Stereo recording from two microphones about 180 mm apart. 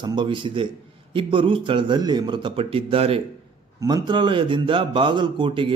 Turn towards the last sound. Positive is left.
turn(degrees=-25)  # may be behind; listen again after turning